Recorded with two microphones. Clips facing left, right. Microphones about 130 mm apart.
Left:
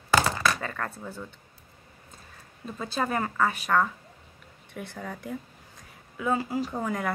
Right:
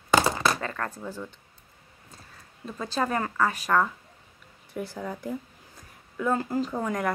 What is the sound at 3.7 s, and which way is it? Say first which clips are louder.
Speech: right 1 dB; 5° right (ahead or behind).